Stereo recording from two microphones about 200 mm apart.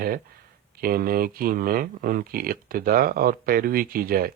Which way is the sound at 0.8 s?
45° right (ahead or behind).